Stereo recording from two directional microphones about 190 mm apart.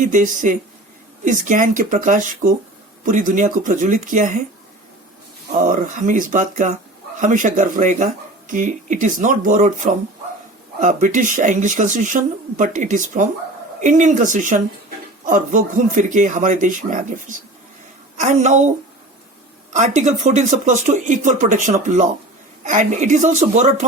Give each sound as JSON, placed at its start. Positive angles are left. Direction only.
{"t": 0.0, "sound": "speech", "side_deg": -40}
{"t": 5.5, "sound": "speech", "side_deg": -40}
{"t": 19.7, "sound": "speech", "side_deg": -40}